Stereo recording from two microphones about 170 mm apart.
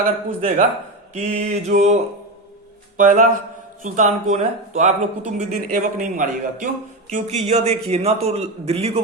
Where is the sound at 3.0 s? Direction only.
50° right (ahead or behind).